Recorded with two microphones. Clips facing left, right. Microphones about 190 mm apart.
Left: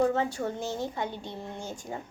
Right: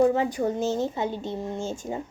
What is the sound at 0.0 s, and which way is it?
A woman's voice, 15° right (ahead or behind).